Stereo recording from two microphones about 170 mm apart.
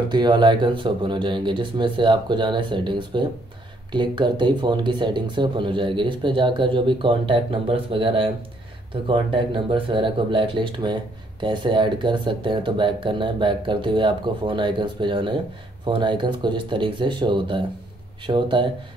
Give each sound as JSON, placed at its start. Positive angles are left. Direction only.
{"t": 0.1, "sound": "speech", "side_deg": -25}